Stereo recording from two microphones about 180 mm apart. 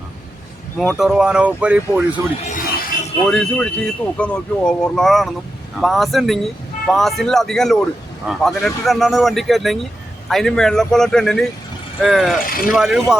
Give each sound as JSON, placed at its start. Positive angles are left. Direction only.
{"t": 0.8, "sound": "speech", "side_deg": 0}
{"t": 2.5, "sound": "a sound", "side_deg": 50}
{"t": 3.2, "sound": "speech", "side_deg": 5}
{"t": 12.5, "sound": "speech", "side_deg": 50}
{"t": 12.7, "sound": "speech", "side_deg": -5}